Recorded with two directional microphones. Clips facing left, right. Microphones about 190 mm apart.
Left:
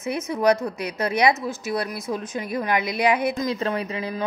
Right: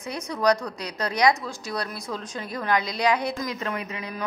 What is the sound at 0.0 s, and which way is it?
Speech, 25° left (ahead or behind).